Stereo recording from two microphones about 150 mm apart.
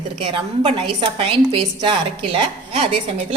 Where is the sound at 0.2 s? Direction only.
40° right (ahead or behind).